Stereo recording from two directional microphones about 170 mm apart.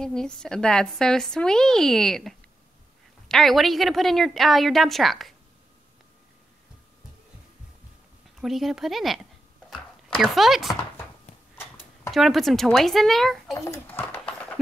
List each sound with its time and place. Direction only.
0.0 s speech: 5° left (ahead or behind)
8.4 s speech: centre (ahead or behind)
12.1 s speech: centre (ahead or behind)
13.7 s a sound: 10° left (ahead or behind)